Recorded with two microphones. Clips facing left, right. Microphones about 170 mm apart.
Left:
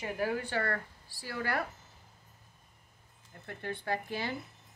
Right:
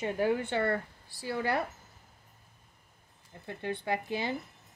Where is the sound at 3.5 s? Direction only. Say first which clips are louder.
Right 3 dB; 20° right (ahead or behind).